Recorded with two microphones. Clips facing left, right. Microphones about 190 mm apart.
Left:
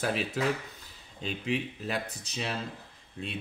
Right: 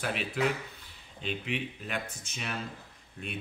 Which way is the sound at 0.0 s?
40° left (ahead or behind).